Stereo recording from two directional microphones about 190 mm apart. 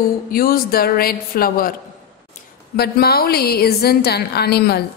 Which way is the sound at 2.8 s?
55° left (ahead or behind).